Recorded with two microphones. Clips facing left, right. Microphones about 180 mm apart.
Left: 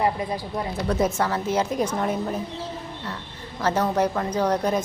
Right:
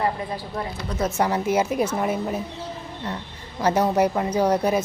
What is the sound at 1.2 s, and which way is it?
A woman's voice, 15° right (ahead or behind).